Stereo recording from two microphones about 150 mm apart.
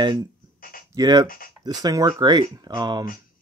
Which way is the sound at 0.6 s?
70° left (ahead or behind).